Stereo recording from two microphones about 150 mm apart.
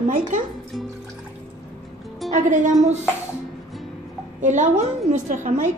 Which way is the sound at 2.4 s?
55° right (ahead or behind).